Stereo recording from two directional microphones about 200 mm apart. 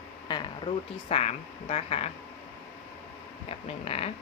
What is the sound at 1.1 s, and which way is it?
Speech, 30° left (ahead or behind).